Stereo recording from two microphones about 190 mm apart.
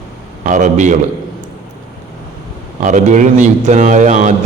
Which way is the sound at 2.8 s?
40° right (ahead or behind).